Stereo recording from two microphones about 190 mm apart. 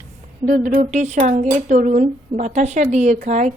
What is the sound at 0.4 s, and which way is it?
Speech, 45° right (ahead or behind).